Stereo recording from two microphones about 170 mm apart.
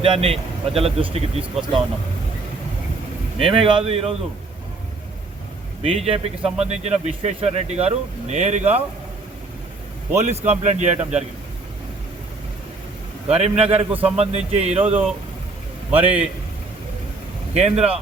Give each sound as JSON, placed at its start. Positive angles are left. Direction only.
{"t": 0.0, "sound": "a man's voice", "side_deg": -35}
{"t": 3.3, "sound": "a man's voice", "side_deg": -35}
{"t": 5.8, "sound": "a man's voice", "side_deg": -35}
{"t": 10.2, "sound": "a man's voice", "side_deg": -40}
{"t": 13.3, "sound": "a man's voice", "side_deg": -35}
{"t": 17.5, "sound": "a man's voice", "side_deg": -40}